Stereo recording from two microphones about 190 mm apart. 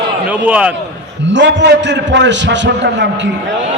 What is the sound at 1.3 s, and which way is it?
A man's voice, 70° right (ahead or behind).